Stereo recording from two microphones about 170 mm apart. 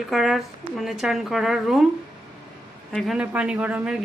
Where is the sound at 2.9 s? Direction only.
Centre (ahead or behind).